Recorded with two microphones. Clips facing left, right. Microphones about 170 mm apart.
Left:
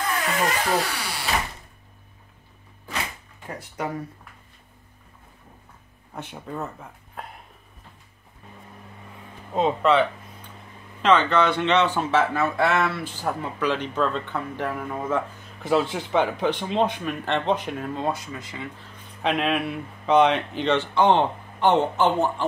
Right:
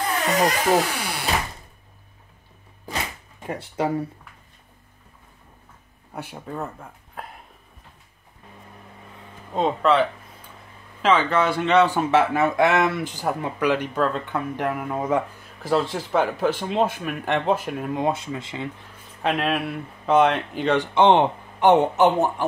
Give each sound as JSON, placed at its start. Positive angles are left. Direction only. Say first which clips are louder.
{"t": 0.1, "sound": "speech", "louder": "right 5 dB", "side_deg": -35}
{"t": 3.4, "sound": "speech", "louder": "right 6 dB", "side_deg": -30}
{"t": 6.1, "sound": "speech", "louder": "right 1 dB", "side_deg": -5}
{"t": 9.5, "sound": "speech", "louder": "even", "side_deg": 5}
{"t": 15.6, "sound": "speech", "louder": "even", "side_deg": 0}
{"t": 19.2, "sound": "speech", "louder": "even", "side_deg": 0}